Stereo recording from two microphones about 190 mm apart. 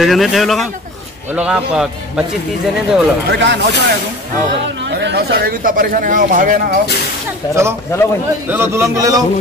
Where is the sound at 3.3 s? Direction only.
65° right (ahead or behind).